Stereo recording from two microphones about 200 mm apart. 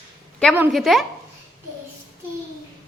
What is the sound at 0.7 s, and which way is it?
Speech, centre (ahead or behind).